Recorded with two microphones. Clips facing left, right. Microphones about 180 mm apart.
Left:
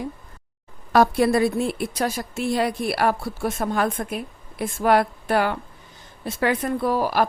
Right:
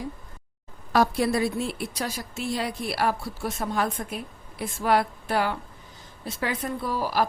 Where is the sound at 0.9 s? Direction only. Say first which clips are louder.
Left 5 dB; 60° left (ahead or behind).